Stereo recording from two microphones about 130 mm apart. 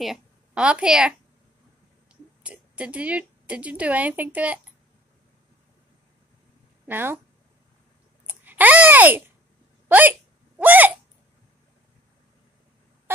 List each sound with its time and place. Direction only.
0.0 s a woman's voice: 5° right (ahead or behind)
2.4 s a woman's voice: 10° right (ahead or behind)
6.9 s a woman's voice: 15° right (ahead or behind)
8.3 s a woman's voice: 15° right (ahead or behind)